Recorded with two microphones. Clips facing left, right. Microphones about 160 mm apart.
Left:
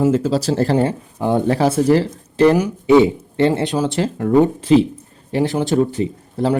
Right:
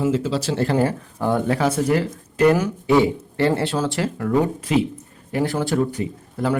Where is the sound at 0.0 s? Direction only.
40° left (ahead or behind).